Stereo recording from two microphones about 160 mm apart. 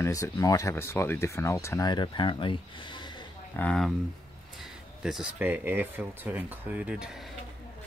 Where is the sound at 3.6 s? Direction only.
5° left (ahead or behind).